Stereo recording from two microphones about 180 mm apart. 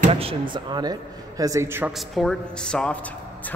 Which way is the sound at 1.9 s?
Centre (ahead or behind).